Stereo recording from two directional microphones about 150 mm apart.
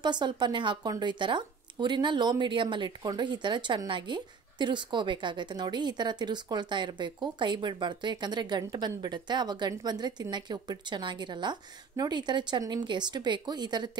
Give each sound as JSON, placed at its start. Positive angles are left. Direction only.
{"t": 0.0, "sound": "speech", "side_deg": -30}